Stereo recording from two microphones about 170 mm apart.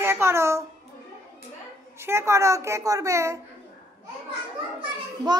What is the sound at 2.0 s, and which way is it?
Speech, 15° right (ahead or behind).